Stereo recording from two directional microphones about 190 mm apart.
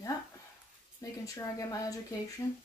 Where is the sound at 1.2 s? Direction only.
20° left (ahead or behind).